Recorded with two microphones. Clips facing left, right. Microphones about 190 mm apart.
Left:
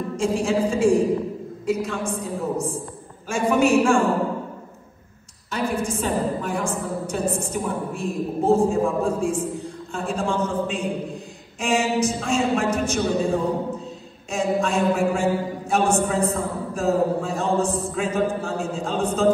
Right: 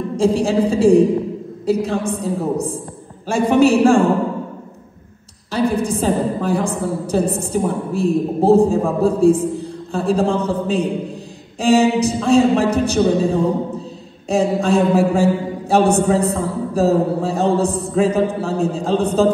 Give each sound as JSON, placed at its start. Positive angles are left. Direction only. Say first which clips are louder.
{"t": 0.2, "sound": "a woman's voice", "louder": "right 6 dB", "side_deg": -35}
{"t": 3.3, "sound": "a woman's voice", "louder": "right 5 dB", "side_deg": -35}
{"t": 5.5, "sound": "a woman's voice", "louder": "right 7 dB", "side_deg": -35}